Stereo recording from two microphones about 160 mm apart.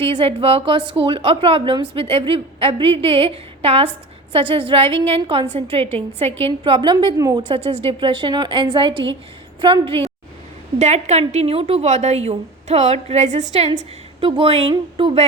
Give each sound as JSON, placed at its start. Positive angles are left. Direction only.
{"t": 0.2, "sound": "a woman's voice", "side_deg": -35}
{"t": 10.8, "sound": "a woman's voice", "side_deg": -45}